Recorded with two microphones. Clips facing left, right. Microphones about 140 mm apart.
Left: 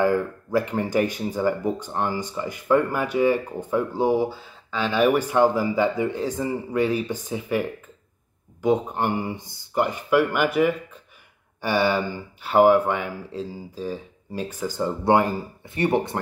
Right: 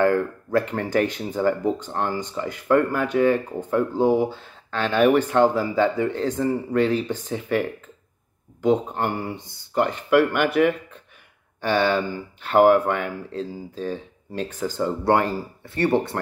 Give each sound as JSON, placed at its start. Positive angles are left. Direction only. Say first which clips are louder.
{"t": 0.0, "sound": "speech", "louder": "right 1 dB", "side_deg": 10}
{"t": 8.6, "sound": "speech", "louder": "right 1 dB", "side_deg": 15}